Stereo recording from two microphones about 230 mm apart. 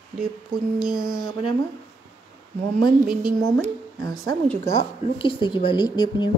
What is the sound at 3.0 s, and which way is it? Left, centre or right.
Speech, centre.